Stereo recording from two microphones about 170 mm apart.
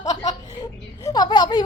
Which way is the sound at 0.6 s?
25° left (ahead or behind).